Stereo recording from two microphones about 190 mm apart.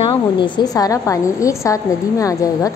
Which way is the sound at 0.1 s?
20° left (ahead or behind).